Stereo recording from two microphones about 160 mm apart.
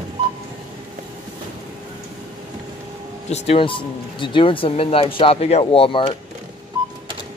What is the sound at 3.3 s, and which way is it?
Speech, 35° left (ahead or behind).